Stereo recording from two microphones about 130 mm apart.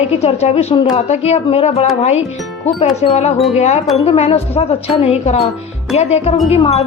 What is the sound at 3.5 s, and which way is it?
Speech, 60° left (ahead or behind).